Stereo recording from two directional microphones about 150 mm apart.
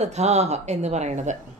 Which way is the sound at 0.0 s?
50° right (ahead or behind).